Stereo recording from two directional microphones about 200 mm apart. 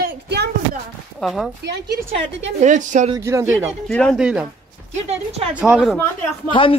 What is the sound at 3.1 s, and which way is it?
Speech, 15° right (ahead or behind).